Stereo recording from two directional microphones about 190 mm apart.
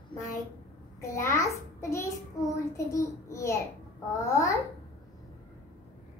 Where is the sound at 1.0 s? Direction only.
15° left (ahead or behind).